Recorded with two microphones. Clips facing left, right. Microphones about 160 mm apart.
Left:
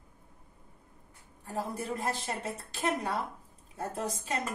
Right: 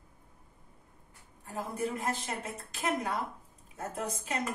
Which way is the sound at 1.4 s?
35° left (ahead or behind).